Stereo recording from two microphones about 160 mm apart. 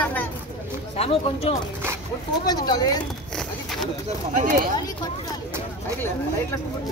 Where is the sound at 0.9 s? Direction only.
40° left (ahead or behind).